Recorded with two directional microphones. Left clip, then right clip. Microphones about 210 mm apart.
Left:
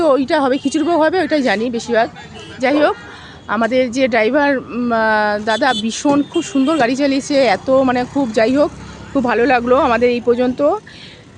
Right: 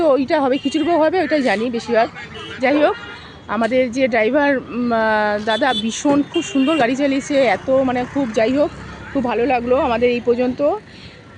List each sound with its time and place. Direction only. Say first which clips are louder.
0.0 s speech: left 2 dB; 5° left (ahead or behind)
8.0 s speech: left 3 dB; 35° left (ahead or behind)
8.3 s speech: left 3 dB; 10° left (ahead or behind)